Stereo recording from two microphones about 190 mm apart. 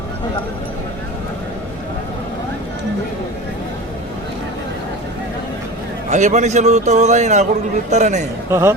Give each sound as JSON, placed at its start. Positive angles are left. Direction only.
{"t": 6.1, "sound": "speech", "side_deg": -40}
{"t": 8.4, "sound": "speech", "side_deg": -15}